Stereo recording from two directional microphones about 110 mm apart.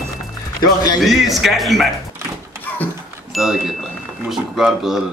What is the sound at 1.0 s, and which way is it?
Speech, centre (ahead or behind).